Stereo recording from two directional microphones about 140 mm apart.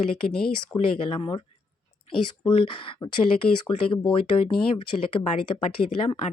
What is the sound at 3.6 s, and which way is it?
Speech, 35° left (ahead or behind).